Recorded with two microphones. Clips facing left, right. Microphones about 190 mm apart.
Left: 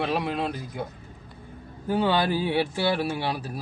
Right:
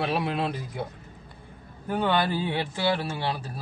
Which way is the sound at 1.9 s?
10° left (ahead or behind).